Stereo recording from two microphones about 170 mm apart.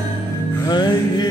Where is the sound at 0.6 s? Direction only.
25° left (ahead or behind).